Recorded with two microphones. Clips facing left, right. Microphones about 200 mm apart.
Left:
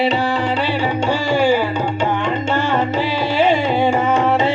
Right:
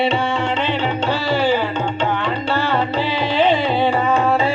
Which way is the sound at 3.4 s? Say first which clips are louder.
Left 1 dB; 10° left (ahead or behind).